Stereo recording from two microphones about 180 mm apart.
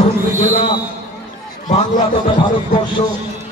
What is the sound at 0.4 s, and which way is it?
Basketball bounce, 45° left (ahead or behind).